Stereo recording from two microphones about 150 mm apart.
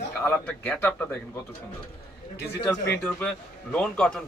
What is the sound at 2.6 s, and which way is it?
A man's voice, 15° left (ahead or behind).